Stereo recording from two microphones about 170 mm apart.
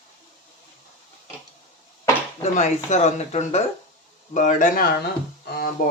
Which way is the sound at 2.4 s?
45° left (ahead or behind).